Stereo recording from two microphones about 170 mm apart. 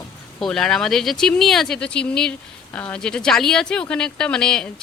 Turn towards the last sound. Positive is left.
turn(degrees=5)  # may be behind; listen again after turning